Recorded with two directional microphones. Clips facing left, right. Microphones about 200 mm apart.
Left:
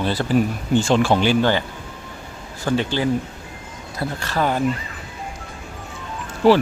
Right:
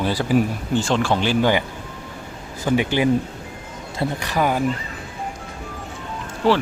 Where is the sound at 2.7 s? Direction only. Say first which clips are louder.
Right 2 dB; 15° right (ahead or behind).